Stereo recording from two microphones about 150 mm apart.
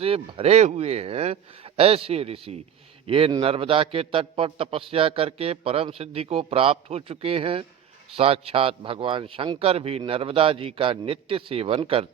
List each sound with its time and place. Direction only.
0.0 s a man's voice: 40° right (ahead or behind)